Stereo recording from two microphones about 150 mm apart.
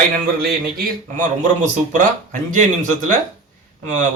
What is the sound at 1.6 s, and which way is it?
A man's voice, 55° right (ahead or behind).